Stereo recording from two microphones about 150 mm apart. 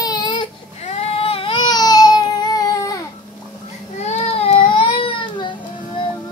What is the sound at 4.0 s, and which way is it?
Baby cry, 45° left (ahead or behind).